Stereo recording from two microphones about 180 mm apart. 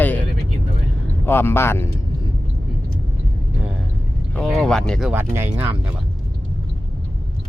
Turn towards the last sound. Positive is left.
turn(degrees=-10)  # may be behind; listen again after turning